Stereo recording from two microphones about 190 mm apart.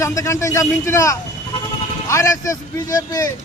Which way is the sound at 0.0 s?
15° left (ahead or behind).